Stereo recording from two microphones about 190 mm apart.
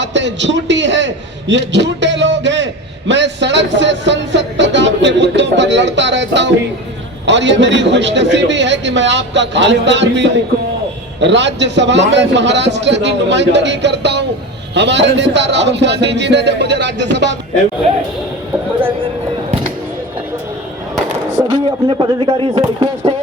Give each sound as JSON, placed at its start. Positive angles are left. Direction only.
{"t": 0.0, "sound": "a man's voice", "side_deg": -70}
{"t": 21.4, "sound": "speech", "side_deg": -25}